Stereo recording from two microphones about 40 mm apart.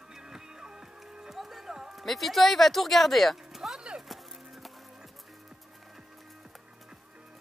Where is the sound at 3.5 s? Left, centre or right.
Centre.